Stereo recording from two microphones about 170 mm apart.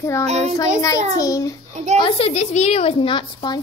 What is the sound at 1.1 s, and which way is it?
Speech, 20° left (ahead or behind).